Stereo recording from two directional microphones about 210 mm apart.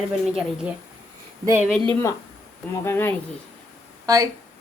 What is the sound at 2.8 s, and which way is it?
Speech, 10° left (ahead or behind).